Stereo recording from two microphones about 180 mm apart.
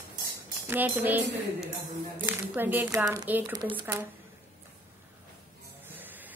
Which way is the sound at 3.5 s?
25° right (ahead or behind).